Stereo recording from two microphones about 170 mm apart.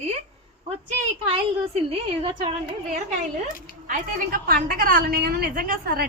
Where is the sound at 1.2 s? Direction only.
35° right (ahead or behind).